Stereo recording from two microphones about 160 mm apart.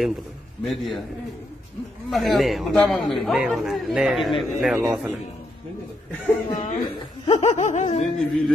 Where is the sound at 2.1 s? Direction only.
Centre (ahead or behind).